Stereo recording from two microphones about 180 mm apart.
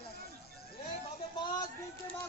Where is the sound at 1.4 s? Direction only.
25° left (ahead or behind).